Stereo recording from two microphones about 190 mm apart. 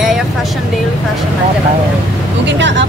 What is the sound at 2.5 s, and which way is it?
Speech, 70° right (ahead or behind).